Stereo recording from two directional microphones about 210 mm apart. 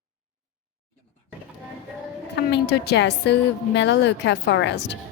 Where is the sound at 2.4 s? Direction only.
55° left (ahead or behind).